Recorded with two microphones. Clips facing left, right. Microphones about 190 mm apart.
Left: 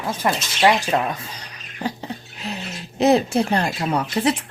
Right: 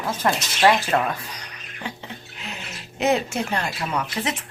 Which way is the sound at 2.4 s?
35° left (ahead or behind).